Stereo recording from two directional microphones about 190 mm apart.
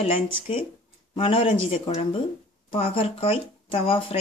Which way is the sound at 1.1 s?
30° left (ahead or behind).